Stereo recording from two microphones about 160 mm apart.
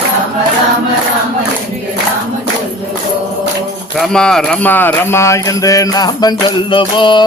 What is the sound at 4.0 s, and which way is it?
Speech, 5° left (ahead or behind).